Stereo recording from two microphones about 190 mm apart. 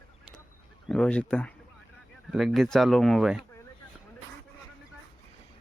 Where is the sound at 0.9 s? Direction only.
5° left (ahead or behind).